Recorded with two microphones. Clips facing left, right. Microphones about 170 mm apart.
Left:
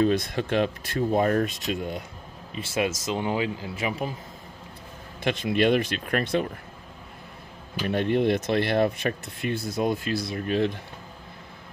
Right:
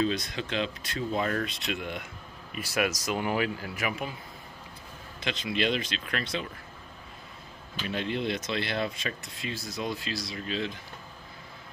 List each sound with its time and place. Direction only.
0.0 s speech: 55° left (ahead or behind); by 2.0 s 40° left (ahead or behind)
2.5 s speech: 25° left (ahead or behind)
5.2 s speech: 55° left (ahead or behind)
7.8 s speech: 55° left (ahead or behind)